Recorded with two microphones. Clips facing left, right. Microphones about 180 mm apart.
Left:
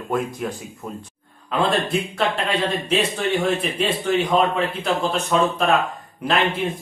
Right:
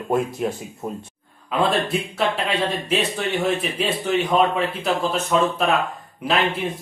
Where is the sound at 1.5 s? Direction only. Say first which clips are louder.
Even; 5° right (ahead or behind).